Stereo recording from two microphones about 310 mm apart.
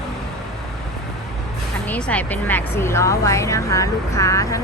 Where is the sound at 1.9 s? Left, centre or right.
Centre.